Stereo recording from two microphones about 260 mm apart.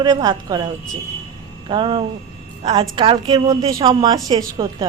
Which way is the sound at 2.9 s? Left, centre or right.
Centre.